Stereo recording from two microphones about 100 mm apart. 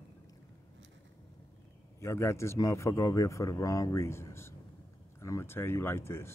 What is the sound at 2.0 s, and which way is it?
A man's voice, 25° left (ahead or behind).